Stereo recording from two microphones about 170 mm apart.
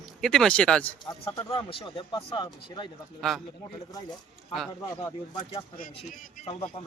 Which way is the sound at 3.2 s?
Centre (ahead or behind).